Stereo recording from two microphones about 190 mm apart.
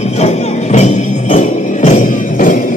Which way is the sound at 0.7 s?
40° left (ahead or behind).